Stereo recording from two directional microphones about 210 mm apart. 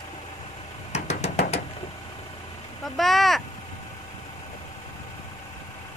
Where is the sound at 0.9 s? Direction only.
35° left (ahead or behind).